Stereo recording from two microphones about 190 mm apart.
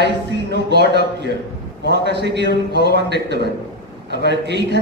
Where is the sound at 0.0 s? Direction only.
65° right (ahead or behind).